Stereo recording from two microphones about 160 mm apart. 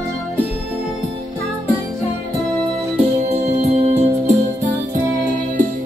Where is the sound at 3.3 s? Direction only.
40° right (ahead or behind).